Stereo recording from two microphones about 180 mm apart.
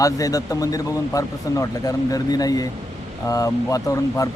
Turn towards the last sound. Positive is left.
turn(degrees=20)  # may be behind; listen again after turning